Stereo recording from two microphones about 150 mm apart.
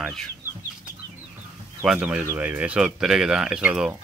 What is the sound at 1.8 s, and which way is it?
Speech, 5° right (ahead or behind).